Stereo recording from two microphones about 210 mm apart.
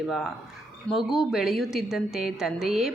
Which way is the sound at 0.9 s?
Centre (ahead or behind).